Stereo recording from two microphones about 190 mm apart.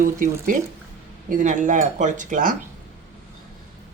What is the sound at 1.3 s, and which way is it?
Speech, 40° right (ahead or behind).